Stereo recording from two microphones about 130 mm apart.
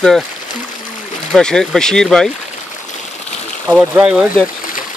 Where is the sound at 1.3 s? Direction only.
5° left (ahead or behind).